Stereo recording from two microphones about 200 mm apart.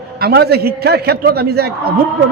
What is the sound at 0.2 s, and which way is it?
A man's voice, 50° right (ahead or behind).